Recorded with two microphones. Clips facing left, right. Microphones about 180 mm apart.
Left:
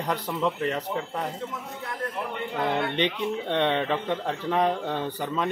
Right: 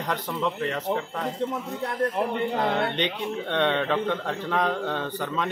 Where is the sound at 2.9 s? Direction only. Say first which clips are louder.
Left 2 dB; 5° left (ahead or behind).